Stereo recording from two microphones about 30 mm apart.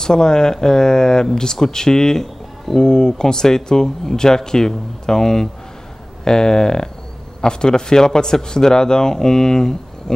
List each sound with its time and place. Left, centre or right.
0.0 s speech: left